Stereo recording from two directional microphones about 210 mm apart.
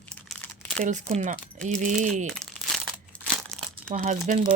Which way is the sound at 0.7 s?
35° right (ahead or behind).